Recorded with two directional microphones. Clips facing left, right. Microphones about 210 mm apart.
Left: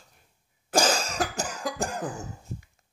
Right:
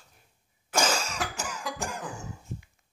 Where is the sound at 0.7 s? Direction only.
35° left (ahead or behind).